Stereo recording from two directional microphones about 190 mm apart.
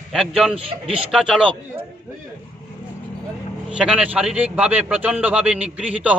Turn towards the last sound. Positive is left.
turn(degrees=-5)  # may be behind; listen again after turning